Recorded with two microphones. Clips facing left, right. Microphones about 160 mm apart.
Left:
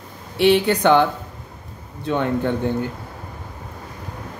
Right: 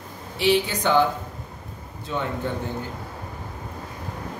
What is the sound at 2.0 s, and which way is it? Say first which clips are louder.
Speech: left 7 dB; 60° left (ahead or behind).